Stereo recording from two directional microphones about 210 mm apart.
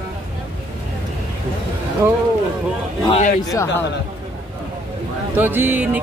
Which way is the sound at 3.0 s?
30° left (ahead or behind).